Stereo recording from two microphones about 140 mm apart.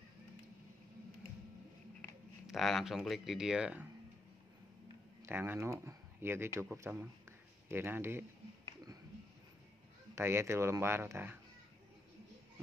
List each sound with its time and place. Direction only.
2.4 s speech: centre (ahead or behind)
5.2 s speech: 15° right (ahead or behind)
10.1 s speech: 20° right (ahead or behind)